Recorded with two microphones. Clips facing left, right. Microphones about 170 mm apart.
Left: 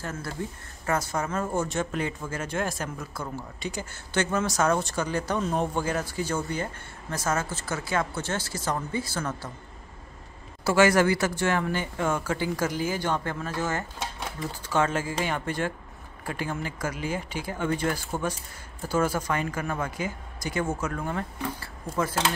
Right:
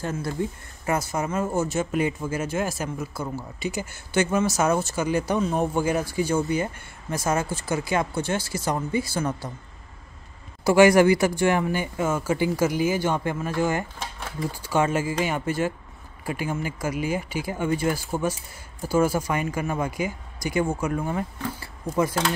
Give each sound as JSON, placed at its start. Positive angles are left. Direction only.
{"t": 0.0, "sound": "speech", "side_deg": -15}
{"t": 10.6, "sound": "speech", "side_deg": -15}